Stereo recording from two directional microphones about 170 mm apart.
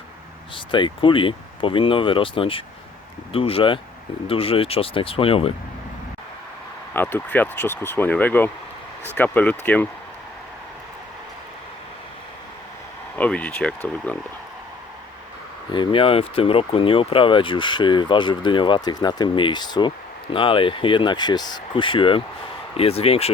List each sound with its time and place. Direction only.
0.5 s speech: 30° left (ahead or behind)
6.9 s speech: 10° left (ahead or behind)
13.1 s speech: 10° left (ahead or behind)
15.7 s speech: 30° left (ahead or behind)